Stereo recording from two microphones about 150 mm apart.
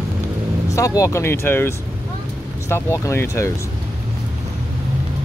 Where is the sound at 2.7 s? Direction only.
15° left (ahead or behind).